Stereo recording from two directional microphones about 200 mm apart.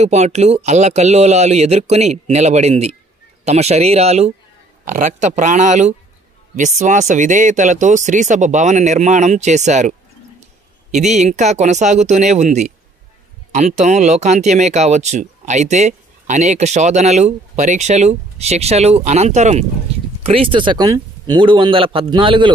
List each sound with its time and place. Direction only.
0.0 s a man's voice: 35° right (ahead or behind)